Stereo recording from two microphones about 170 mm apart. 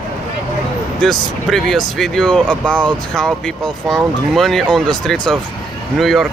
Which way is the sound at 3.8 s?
Centre (ahead or behind).